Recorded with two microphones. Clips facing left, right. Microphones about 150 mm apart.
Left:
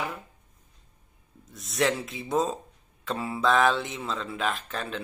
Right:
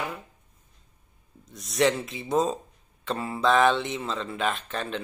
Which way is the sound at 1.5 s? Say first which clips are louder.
Right 3 dB; centre (ahead or behind).